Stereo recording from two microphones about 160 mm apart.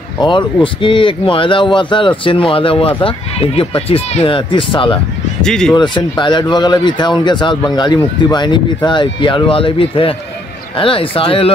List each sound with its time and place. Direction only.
0.2 s a man's voice: 30° left (ahead or behind)
5.4 s speech: 5° left (ahead or behind)
5.8 s a man's voice: 30° left (ahead or behind)